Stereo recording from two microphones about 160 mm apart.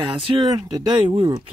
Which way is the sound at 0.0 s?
35° right (ahead or behind).